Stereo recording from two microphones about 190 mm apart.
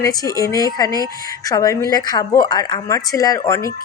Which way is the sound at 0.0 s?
15° left (ahead or behind).